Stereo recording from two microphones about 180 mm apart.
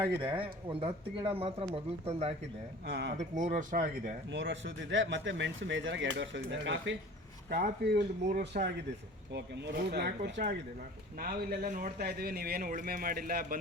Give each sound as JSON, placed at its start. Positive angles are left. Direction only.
{"t": 0.2, "sound": "speech", "side_deg": -30}
{"t": 2.8, "sound": "speech", "side_deg": -65}
{"t": 3.2, "sound": "a man's voice", "side_deg": -40}
{"t": 4.3, "sound": "speech", "side_deg": -85}
{"t": 7.5, "sound": "speech", "side_deg": -60}
{"t": 9.3, "sound": "speech", "side_deg": -70}
{"t": 11.2, "sound": "a man's voice", "side_deg": -55}